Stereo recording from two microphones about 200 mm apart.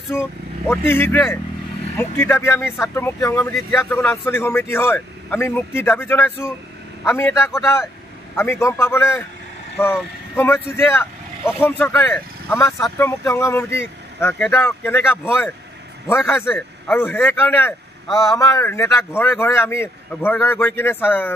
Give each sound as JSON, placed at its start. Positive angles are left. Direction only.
{"t": 0.1, "sound": "a man's voice", "side_deg": 10}
{"t": 18.1, "sound": "speech", "side_deg": 0}
{"t": 18.4, "sound": "speech", "side_deg": 15}